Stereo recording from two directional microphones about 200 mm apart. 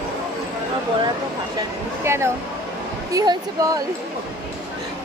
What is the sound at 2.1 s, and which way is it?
Speech, 15° right (ahead or behind).